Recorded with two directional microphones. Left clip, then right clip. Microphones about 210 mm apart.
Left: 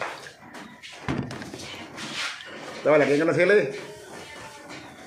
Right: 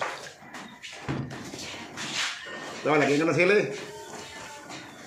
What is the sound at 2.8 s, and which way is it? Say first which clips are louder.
Speech: left 4 dB; 15° right (ahead or behind).